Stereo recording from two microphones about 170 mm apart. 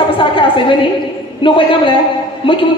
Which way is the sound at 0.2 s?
30° left (ahead or behind).